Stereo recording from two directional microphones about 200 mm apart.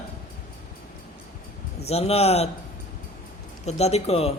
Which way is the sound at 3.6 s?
30° left (ahead or behind).